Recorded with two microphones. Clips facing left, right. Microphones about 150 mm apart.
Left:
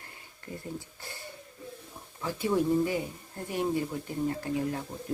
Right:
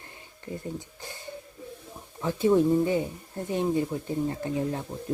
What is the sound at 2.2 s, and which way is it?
Speech, 20° right (ahead or behind).